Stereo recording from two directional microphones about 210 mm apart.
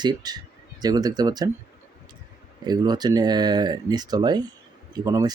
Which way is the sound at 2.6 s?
20° right (ahead or behind).